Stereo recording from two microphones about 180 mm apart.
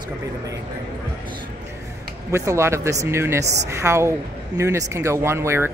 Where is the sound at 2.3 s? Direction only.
15° right (ahead or behind).